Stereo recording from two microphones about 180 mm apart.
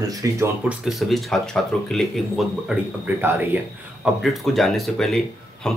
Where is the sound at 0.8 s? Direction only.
Centre (ahead or behind).